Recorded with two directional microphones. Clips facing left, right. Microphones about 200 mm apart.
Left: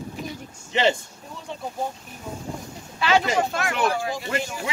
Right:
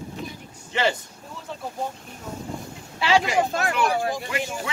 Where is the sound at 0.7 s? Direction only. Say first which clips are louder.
Left 2 dB; 20° left (ahead or behind).